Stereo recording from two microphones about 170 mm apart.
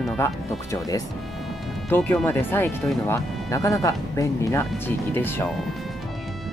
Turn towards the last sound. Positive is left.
turn(degrees=10)  # may be behind; listen again after turning